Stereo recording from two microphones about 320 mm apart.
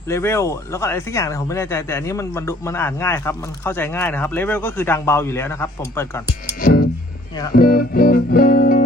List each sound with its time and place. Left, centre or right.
0.1 s speech: centre
6.6 s music: left